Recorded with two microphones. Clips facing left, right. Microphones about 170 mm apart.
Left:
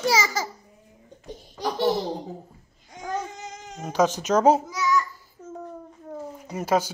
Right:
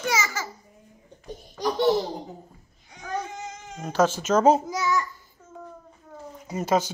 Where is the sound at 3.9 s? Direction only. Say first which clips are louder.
Even; 15° left (ahead or behind).